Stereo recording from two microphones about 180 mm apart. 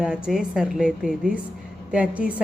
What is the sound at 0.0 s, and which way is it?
A woman's voice, 5° right (ahead or behind).